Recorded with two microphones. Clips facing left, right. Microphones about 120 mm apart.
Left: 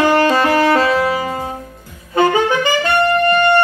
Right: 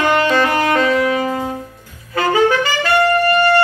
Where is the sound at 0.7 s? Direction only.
30° left (ahead or behind).